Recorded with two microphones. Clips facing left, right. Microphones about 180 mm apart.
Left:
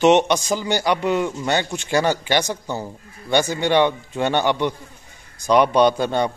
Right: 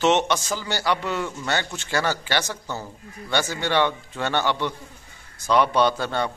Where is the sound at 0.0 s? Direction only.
15° left (ahead or behind).